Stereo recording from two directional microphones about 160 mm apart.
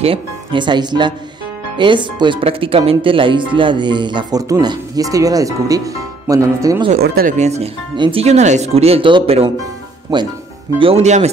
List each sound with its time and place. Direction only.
0.0 s speech: 35° right (ahead or behind)
7.0 s speech: 70° right (ahead or behind)
7.3 s speech: 45° right (ahead or behind)
10.8 s speech: 40° right (ahead or behind)